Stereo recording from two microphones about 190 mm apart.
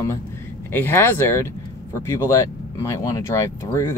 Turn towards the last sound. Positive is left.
turn(degrees=15)  # may be behind; listen again after turning